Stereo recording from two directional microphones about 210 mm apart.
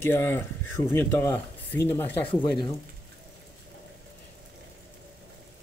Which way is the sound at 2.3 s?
20° left (ahead or behind).